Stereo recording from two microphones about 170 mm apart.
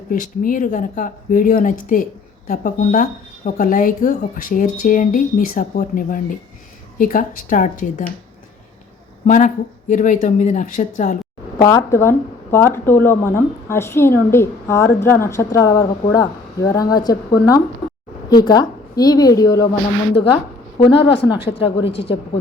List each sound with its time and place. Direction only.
0.1 s speech: 50° left (ahead or behind)
9.2 s speech: 45° left (ahead or behind)
11.5 s a woman's voice: 20° left (ahead or behind)
21.1 s speech: 90° left